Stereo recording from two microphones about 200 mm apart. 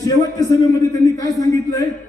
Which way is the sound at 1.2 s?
15° left (ahead or behind).